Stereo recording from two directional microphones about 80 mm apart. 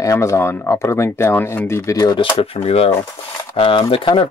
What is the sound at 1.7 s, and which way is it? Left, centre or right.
Speech, left.